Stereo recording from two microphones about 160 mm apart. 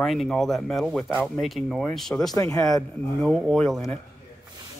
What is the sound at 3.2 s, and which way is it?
Speech, 5° left (ahead or behind).